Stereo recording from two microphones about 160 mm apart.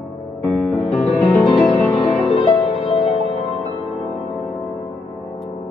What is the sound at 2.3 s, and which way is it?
Music, 40° left (ahead or behind).